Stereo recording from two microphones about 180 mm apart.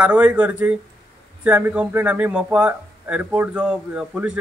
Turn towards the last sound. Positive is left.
turn(degrees=-5)  # may be behind; listen again after turning